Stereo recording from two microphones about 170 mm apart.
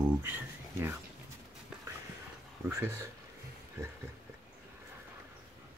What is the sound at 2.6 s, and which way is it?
Speech, 15° right (ahead or behind).